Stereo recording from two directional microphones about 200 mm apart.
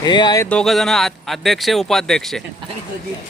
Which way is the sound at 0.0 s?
20° left (ahead or behind).